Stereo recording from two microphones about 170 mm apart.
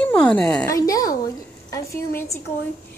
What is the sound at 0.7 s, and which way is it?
Speech, 20° left (ahead or behind).